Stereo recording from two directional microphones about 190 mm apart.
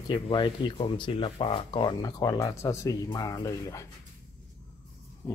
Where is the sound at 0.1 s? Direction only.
25° left (ahead or behind).